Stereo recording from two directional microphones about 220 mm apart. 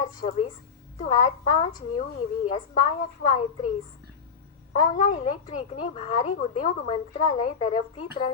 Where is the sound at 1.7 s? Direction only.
40° left (ahead or behind).